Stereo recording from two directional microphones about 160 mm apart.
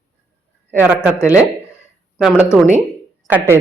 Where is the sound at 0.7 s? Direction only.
10° right (ahead or behind).